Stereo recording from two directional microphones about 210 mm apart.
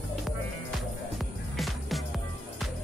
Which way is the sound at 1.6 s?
Centre (ahead or behind).